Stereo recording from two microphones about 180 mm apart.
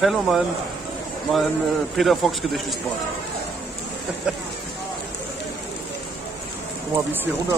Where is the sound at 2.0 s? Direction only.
Centre (ahead or behind).